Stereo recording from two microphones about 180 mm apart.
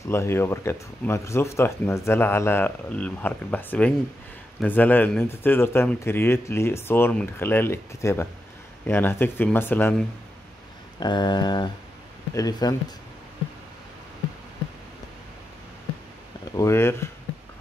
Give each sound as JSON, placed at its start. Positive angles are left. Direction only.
{"t": 0.0, "sound": "speech", "side_deg": 15}
{"t": 11.0, "sound": "mantra", "side_deg": 25}
{"t": 16.5, "sound": "speech", "side_deg": 15}